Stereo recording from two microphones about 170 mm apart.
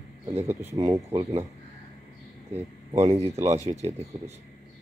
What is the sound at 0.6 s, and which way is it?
Speech, 35° right (ahead or behind).